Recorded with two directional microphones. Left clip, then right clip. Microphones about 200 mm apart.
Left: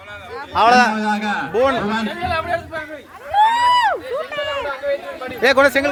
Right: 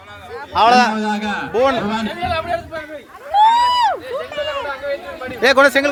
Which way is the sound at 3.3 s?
35° left (ahead or behind).